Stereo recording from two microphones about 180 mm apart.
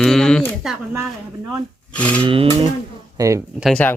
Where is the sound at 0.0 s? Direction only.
5° left (ahead or behind).